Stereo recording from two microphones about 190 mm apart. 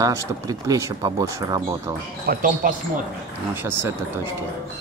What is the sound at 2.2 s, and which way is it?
Speech, 45° right (ahead or behind).